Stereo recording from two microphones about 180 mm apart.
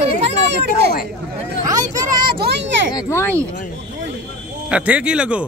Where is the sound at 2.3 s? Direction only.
60° right (ahead or behind).